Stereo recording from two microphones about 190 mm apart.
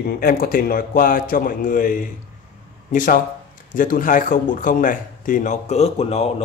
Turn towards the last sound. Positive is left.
turn(degrees=35)  # may be behind; listen again after turning